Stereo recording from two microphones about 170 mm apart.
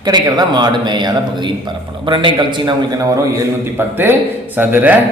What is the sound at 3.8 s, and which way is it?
Speech, 15° right (ahead or behind).